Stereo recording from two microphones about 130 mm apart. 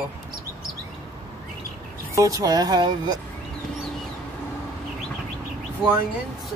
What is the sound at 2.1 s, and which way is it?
Speech, 25° right (ahead or behind).